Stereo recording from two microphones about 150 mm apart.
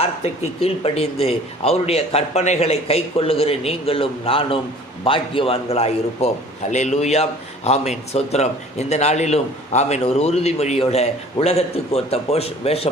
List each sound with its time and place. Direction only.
0.0 s a man's voice: 40° left (ahead or behind)